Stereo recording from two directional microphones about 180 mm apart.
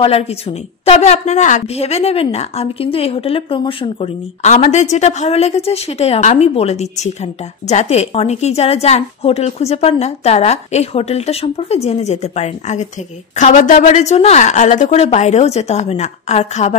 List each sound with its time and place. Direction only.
0.0 s a woman's voice: 35° left (ahead or behind)